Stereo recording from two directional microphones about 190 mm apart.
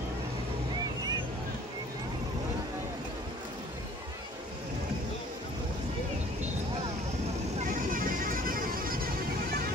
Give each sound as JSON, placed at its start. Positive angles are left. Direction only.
{"t": 7.9, "sound": "music", "side_deg": -45}